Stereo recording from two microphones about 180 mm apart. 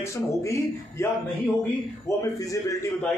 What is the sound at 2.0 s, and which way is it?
Speech, 15° left (ahead or behind).